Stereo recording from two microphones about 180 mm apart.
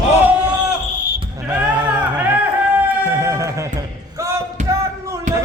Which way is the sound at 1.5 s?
5° right (ahead or behind).